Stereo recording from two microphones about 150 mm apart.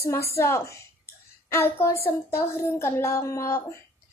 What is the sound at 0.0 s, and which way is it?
A child's voice, 20° left (ahead or behind).